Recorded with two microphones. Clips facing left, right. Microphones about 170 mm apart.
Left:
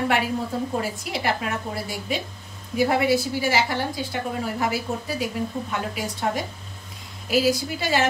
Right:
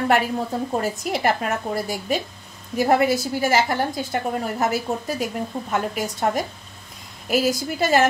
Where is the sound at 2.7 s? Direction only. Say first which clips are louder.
Right 2 dB; 45° right (ahead or behind).